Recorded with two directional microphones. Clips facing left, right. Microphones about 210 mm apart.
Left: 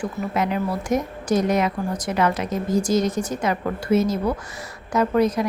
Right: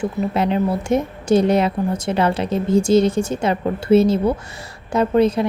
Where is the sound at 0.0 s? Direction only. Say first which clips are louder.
Right 4 dB; 25° right (ahead or behind).